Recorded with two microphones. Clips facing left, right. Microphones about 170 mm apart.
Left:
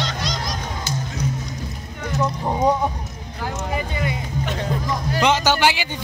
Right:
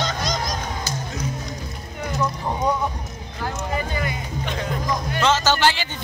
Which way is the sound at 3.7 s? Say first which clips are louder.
Left 1 dB; 20° left (ahead or behind).